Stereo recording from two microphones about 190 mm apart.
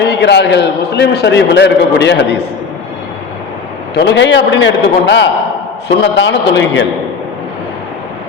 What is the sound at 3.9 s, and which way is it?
A man's voice, 65° left (ahead or behind).